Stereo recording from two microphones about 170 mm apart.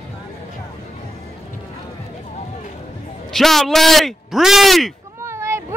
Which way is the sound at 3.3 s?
Centre (ahead or behind).